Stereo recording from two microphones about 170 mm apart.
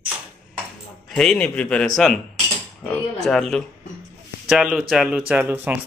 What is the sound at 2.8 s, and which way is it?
Mantra, 5° left (ahead or behind).